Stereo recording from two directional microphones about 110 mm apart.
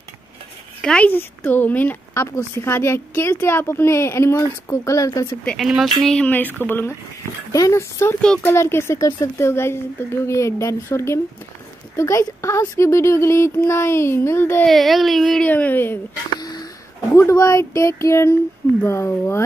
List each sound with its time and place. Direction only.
0.8 s speech: 10° left (ahead or behind); by 5.3 s 30° left (ahead or behind)
5.6 s speech: centre (ahead or behind)
6.0 s speech: 10° left (ahead or behind)
7.5 s speech: 30° left (ahead or behind)
14.7 s speech: centre (ahead or behind)
15.4 s speech: 15° left (ahead or behind)
16.3 s a sound: 40° left (ahead or behind)
17.1 s speech: 25° left (ahead or behind)